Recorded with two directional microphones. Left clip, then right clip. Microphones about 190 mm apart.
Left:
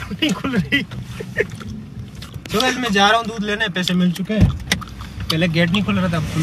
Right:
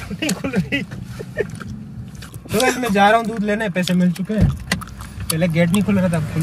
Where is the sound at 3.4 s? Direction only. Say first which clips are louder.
Even; 20° right (ahead or behind).